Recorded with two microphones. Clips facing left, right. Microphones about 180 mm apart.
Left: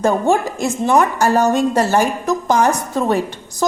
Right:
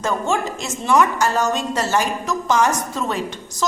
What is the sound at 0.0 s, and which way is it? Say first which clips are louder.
A woman's voice: left 6 dB; 55° left (ahead or behind).